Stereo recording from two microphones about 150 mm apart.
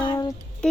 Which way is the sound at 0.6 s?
5° left (ahead or behind).